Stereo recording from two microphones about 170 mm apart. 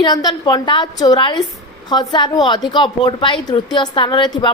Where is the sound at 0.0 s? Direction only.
25° left (ahead or behind).